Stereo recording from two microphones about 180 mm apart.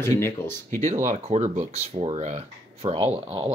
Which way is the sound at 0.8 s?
45° right (ahead or behind).